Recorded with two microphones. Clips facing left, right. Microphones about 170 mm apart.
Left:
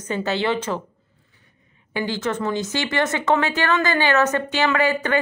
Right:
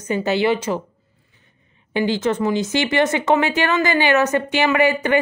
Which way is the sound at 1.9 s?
20° right (ahead or behind).